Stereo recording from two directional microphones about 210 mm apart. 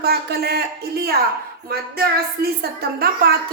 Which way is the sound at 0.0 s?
50° right (ahead or behind).